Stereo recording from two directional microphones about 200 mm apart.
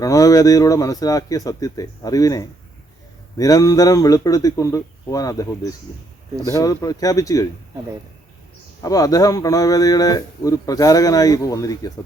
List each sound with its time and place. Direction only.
0.0 s speech: 15° left (ahead or behind)
8.8 s speech: 15° left (ahead or behind)